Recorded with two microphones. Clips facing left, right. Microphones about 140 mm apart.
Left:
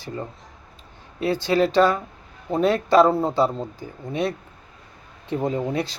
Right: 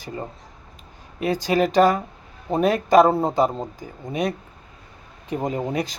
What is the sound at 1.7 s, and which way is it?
Speech, 45° right (ahead or behind).